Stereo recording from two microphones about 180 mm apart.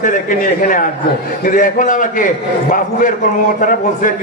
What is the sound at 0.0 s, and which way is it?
A man's voice, 45° left (ahead or behind).